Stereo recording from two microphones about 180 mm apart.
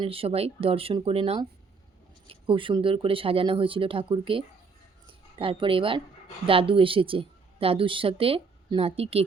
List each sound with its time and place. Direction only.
0.0 s a woman's voice: 30° right (ahead or behind)